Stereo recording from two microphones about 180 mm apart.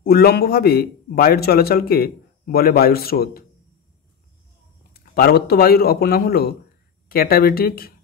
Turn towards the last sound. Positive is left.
turn(degrees=55)  # may be behind; listen again after turning